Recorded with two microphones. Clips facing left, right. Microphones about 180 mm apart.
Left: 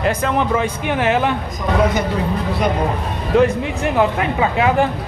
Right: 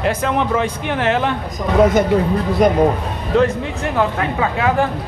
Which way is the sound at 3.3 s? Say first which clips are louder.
Left 1 dB; 10° left (ahead or behind).